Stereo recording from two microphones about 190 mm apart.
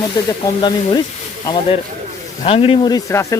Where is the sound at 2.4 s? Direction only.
30° left (ahead or behind).